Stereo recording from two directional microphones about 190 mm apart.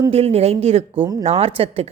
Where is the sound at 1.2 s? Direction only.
30° right (ahead or behind).